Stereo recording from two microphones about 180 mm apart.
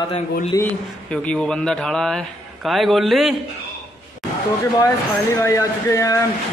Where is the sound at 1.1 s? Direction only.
5° left (ahead or behind).